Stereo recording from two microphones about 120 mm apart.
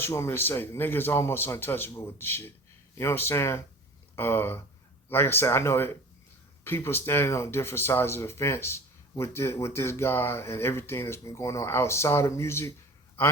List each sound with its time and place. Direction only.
0.0 s speech: 20° left (ahead or behind)